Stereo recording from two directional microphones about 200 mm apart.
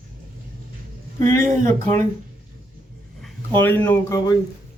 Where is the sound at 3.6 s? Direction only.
10° left (ahead or behind).